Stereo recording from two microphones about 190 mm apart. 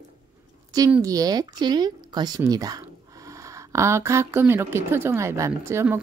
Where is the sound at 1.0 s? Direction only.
20° right (ahead or behind).